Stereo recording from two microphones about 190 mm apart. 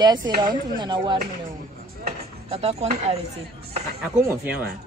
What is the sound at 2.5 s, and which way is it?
Speech, 35° right (ahead or behind).